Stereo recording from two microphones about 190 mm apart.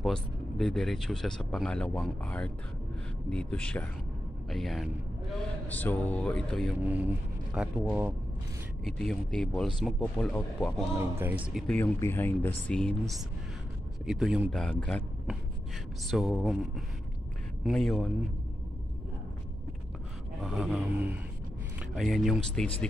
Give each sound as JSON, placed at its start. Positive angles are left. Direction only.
{"t": 0.0, "sound": "speech", "side_deg": 5}
{"t": 6.8, "sound": "speech", "side_deg": -10}
{"t": 8.8, "sound": "speech", "side_deg": 5}
{"t": 11.0, "sound": "speech", "side_deg": -10}
{"t": 11.6, "sound": "speech", "side_deg": 10}
{"t": 16.1, "sound": "speech", "side_deg": 0}
{"t": 20.4, "sound": "speech", "side_deg": -5}